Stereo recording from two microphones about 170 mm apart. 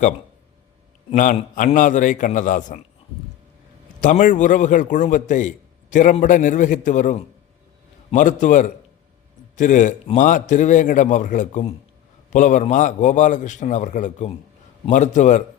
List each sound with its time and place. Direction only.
1.1 s a man's voice: 50° left (ahead or behind)
4.0 s a man's voice: 50° left (ahead or behind)